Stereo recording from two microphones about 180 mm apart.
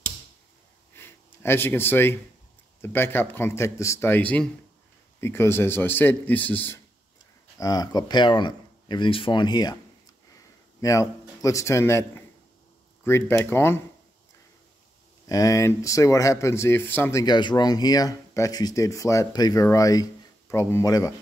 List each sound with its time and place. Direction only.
0.9 s a sound: 15° left (ahead or behind)
2.8 s speech: 10° left (ahead or behind)
10.8 s a man's voice: 20° left (ahead or behind)
15.2 s speech: 20° left (ahead or behind)